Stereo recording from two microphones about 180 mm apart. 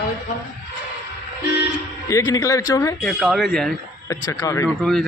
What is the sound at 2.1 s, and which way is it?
Speech, 15° left (ahead or behind).